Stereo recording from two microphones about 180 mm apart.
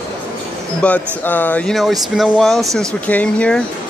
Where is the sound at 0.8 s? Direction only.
10° left (ahead or behind).